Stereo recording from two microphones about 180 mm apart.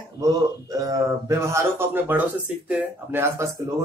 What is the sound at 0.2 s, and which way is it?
Speech, 20° right (ahead or behind).